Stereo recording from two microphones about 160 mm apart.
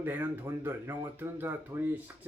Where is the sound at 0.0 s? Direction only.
10° right (ahead or behind).